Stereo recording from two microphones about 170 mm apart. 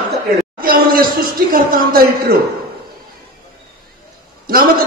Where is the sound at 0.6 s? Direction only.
60° right (ahead or behind).